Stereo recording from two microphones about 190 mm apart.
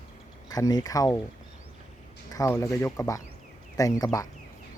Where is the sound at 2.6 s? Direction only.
15° left (ahead or behind).